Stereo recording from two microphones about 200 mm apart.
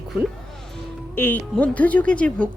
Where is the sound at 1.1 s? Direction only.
10° left (ahead or behind).